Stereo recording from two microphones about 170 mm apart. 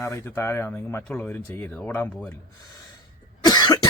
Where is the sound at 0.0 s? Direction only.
15° left (ahead or behind).